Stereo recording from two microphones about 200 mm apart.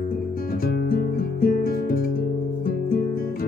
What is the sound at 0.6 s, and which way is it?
Music, 45° left (ahead or behind).